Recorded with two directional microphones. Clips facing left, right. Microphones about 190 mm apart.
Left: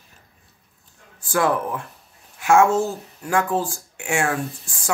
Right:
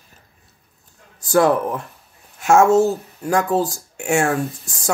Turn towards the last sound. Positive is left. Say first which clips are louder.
# right 4 dB
turn(degrees=-40)  # may be behind; listen again after turning